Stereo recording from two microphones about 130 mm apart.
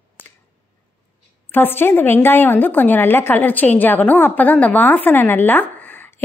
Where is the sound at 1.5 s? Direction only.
15° left (ahead or behind).